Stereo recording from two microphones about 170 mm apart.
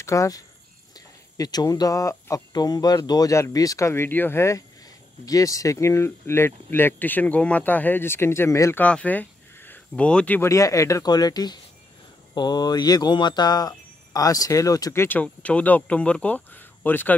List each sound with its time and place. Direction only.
0.0 s speech: 20° left (ahead or behind)